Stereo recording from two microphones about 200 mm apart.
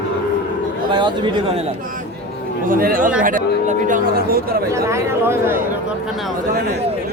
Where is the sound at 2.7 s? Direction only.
45° right (ahead or behind).